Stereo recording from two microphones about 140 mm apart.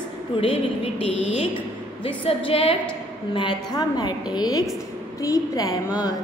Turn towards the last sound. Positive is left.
turn(degrees=25)  # may be behind; listen again after turning